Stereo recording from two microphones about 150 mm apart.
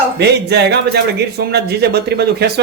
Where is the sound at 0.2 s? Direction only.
90° right.